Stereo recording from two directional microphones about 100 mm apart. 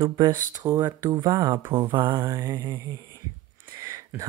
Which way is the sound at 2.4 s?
30° right (ahead or behind).